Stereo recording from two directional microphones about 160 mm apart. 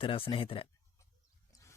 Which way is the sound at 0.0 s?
35° left (ahead or behind).